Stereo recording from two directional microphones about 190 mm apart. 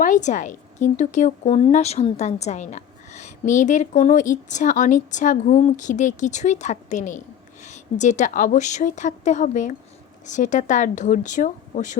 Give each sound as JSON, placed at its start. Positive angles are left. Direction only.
{"t": 0.0, "sound": "a woman's voice", "side_deg": 40}